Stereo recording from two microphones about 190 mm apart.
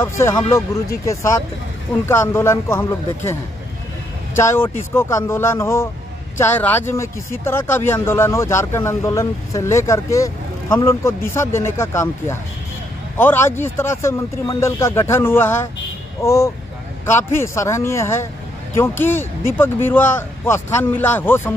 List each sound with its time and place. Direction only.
0.0 s speech: 15° left (ahead or behind)
2.0 s speech: 15° left (ahead or behind)
4.4 s speech: 15° left (ahead or behind)